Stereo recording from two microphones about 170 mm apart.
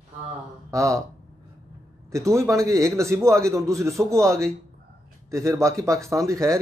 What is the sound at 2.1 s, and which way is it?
A man's voice, 20° right (ahead or behind).